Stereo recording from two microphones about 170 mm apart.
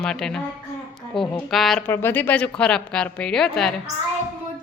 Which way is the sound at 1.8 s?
15° left (ahead or behind).